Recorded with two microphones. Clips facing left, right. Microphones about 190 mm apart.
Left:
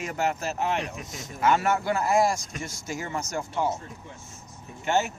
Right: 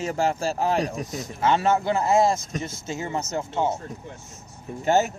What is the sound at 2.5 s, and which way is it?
Speech, 35° right (ahead or behind).